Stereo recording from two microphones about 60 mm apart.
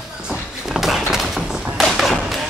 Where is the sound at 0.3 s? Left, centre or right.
Centre.